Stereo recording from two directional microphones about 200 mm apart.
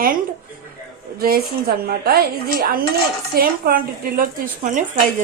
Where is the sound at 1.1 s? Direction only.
50° right (ahead or behind).